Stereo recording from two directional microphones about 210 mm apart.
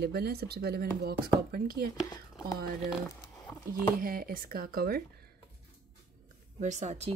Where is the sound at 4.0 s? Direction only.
45° right (ahead or behind).